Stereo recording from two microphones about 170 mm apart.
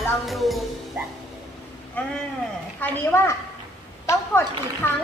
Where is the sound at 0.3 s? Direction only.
Centre (ahead or behind).